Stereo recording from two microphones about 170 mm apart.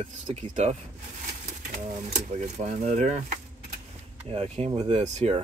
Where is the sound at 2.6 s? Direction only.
45° right (ahead or behind).